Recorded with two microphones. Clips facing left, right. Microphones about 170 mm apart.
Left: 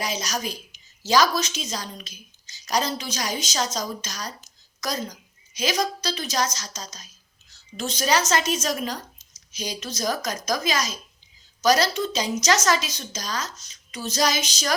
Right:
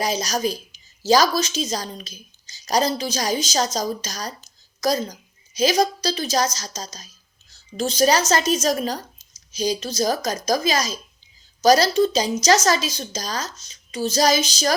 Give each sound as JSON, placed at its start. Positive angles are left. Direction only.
{"t": 0.0, "sound": "a woman's voice", "side_deg": -35}